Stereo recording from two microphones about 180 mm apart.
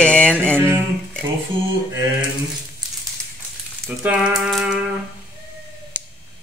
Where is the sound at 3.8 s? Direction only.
5° right (ahead or behind).